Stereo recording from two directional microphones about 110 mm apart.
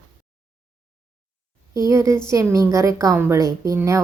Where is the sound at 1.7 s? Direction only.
30° right (ahead or behind).